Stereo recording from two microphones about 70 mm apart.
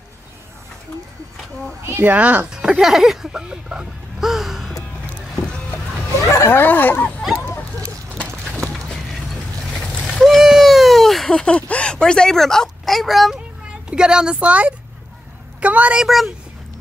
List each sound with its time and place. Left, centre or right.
1.9 s a child's voice: right
2.1 s a woman's voice: right
2.5 s speech: centre
6.3 s speech: left
7.2 s a sound: centre
8.8 s boat: centre
13.8 s a woman's voice: centre
16.0 s speech: centre